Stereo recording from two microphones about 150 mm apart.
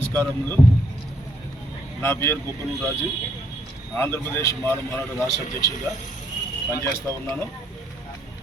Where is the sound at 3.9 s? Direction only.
15° left (ahead or behind).